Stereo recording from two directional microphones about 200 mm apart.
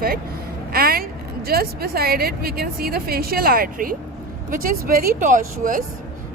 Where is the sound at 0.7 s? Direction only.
50° right (ahead or behind).